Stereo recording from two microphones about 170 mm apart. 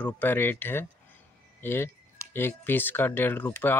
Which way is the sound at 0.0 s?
10° left (ahead or behind).